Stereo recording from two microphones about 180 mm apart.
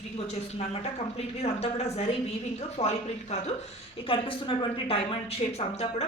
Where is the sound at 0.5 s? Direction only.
35° left (ahead or behind).